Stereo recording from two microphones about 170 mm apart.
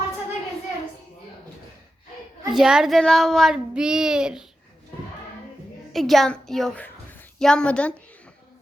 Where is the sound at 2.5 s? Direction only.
5° right (ahead or behind).